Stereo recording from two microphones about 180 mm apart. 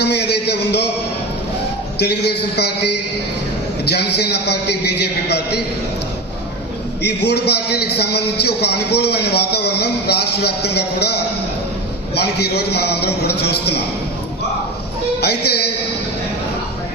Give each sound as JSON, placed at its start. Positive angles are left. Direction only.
{"t": 0.0, "sound": "a sound", "side_deg": 65}
{"t": 2.0, "sound": "a man's voice", "side_deg": 65}
{"t": 7.0, "sound": "a man's voice", "side_deg": 65}
{"t": 15.2, "sound": "a man's voice", "side_deg": 65}